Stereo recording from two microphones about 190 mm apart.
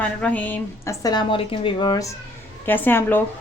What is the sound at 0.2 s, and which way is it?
A woman's voice, 5° left (ahead or behind).